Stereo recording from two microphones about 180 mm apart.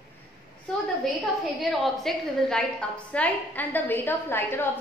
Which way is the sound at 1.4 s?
Centre (ahead or behind).